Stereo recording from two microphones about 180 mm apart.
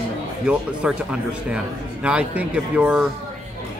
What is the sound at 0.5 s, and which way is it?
Speech, 5° right (ahead or behind).